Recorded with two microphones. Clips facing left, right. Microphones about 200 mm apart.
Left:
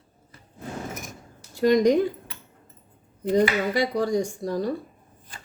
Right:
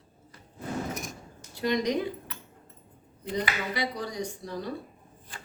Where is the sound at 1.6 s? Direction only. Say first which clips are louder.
Left 9 dB; 50° left (ahead or behind).